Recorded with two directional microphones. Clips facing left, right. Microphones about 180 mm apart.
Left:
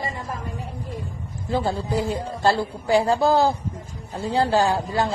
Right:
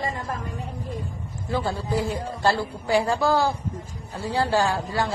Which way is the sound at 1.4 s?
20° left (ahead or behind).